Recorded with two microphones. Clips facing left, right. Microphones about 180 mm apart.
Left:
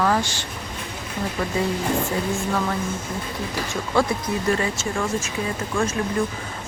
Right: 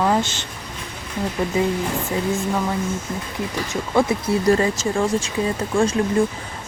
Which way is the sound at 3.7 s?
20° right (ahead or behind).